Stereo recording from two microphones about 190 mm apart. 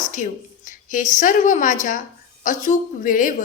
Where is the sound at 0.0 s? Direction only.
40° left (ahead or behind).